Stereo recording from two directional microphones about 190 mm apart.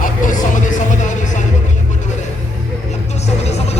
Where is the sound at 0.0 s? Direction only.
45° left (ahead or behind).